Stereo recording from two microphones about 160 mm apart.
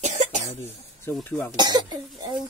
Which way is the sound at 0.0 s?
45° right (ahead or behind).